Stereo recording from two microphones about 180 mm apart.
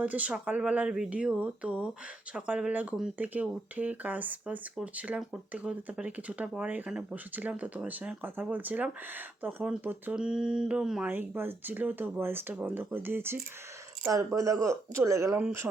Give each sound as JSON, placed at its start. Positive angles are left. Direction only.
{"t": 0.0, "sound": "speech", "side_deg": -5}